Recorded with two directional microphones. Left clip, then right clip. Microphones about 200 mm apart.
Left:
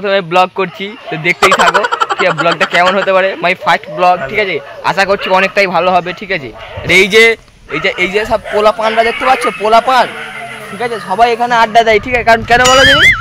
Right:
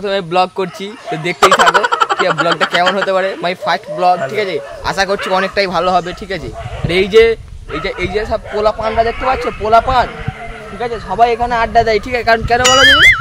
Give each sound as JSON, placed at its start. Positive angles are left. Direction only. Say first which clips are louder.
{"t": 0.0, "sound": "speech", "louder": "left 4 dB", "side_deg": 5}
{"t": 6.9, "sound": "a man's voice", "louder": "left 3 dB", "side_deg": 20}
{"t": 8.0, "sound": "speech", "louder": "left 3 dB", "side_deg": 45}
{"t": 12.1, "sound": "speech", "louder": "left 4 dB", "side_deg": 10}
{"t": 12.6, "sound": "speech", "louder": "right 1 dB", "side_deg": 0}